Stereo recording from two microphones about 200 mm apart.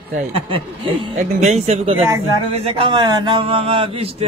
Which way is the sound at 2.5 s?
25° right (ahead or behind).